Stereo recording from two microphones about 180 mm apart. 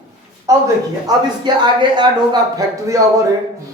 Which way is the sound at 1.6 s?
25° right (ahead or behind).